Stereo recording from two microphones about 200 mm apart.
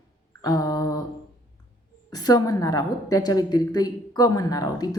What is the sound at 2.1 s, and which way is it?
A woman's voice, 20° left (ahead or behind).